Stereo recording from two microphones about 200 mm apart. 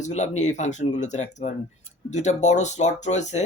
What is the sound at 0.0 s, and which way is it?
Speech, 35° left (ahead or behind).